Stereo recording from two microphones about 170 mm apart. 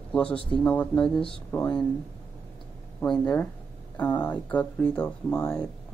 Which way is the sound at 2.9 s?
5° left (ahead or behind).